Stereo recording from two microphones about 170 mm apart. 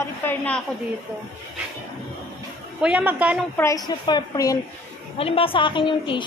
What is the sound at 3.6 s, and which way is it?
Speech, 20° left (ahead or behind).